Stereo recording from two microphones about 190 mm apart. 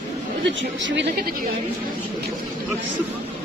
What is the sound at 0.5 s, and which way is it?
Speech, 75° right (ahead or behind).